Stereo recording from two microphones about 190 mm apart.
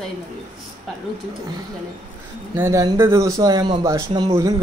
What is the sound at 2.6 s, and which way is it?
Speech, 15° right (ahead or behind).